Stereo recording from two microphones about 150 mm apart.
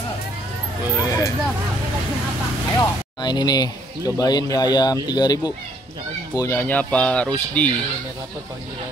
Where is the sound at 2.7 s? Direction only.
25° left (ahead or behind); by 7.8 s 10° left (ahead or behind).